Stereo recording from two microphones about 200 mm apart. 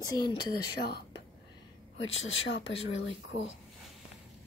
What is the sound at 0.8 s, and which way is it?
Speech, 55° left (ahead or behind).